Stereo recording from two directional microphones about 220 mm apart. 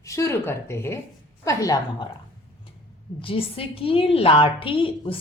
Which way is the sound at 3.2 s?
25° left (ahead or behind).